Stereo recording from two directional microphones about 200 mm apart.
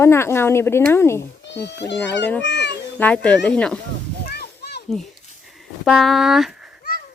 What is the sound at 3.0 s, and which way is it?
Speech, 5° left (ahead or behind).